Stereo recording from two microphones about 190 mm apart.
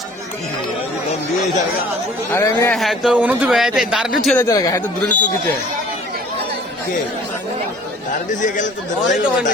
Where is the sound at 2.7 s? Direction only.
Centre (ahead or behind).